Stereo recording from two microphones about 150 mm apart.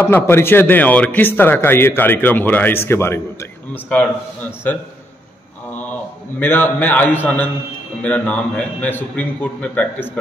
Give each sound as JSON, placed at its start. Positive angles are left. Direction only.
{"t": 0.0, "sound": "a man's voice", "side_deg": 15}
{"t": 5.7, "sound": "a sound", "side_deg": 10}
{"t": 6.4, "sound": "a man's voice", "side_deg": 15}